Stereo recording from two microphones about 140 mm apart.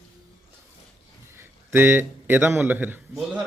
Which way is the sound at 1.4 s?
15° right (ahead or behind).